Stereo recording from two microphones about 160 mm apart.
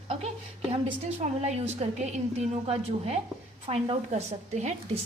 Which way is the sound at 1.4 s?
45° right (ahead or behind).